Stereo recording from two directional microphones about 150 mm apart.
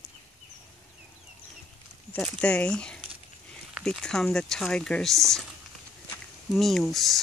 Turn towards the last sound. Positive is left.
turn(degrees=0)  # may be behind; listen again after turning